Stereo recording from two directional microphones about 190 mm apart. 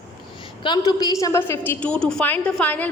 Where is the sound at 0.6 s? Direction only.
20° left (ahead or behind).